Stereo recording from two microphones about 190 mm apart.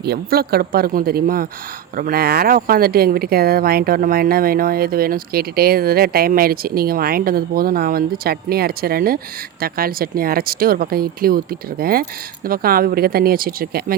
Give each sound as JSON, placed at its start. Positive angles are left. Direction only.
{"t": 0.0, "sound": "speech", "side_deg": -55}